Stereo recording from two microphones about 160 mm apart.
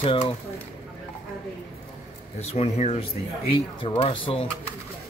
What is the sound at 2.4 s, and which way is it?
Speech, 45° left (ahead or behind).